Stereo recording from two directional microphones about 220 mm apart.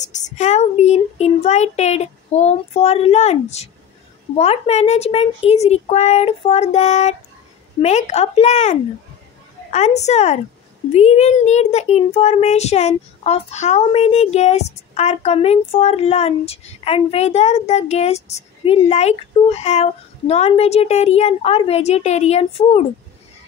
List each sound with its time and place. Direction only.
0.0 s speech: 35° left (ahead or behind)